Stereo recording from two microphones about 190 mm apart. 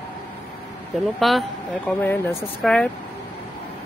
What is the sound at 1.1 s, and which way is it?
Speech, centre (ahead or behind).